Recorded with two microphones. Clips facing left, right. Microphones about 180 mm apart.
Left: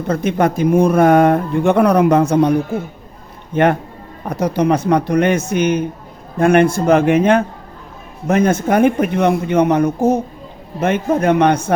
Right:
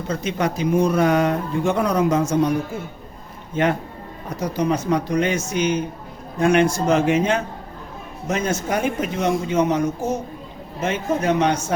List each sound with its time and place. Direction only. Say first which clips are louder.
0.1 s speech: left 7 dB; 55° left (ahead or behind)